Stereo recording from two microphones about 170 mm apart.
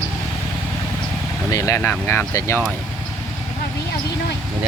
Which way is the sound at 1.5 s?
20° left (ahead or behind).